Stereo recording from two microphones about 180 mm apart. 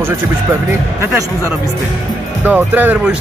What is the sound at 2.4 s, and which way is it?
Speech, 10° right (ahead or behind).